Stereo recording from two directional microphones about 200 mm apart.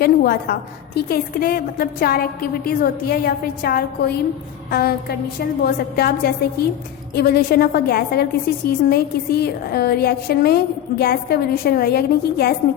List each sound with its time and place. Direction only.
0.0 s a woman's voice: 50° left (ahead or behind)